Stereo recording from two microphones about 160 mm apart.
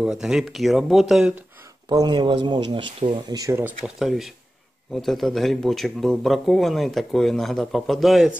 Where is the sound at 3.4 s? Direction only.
15° right (ahead or behind).